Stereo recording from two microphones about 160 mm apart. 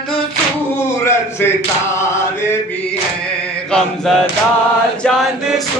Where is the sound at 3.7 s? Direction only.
5° left (ahead or behind).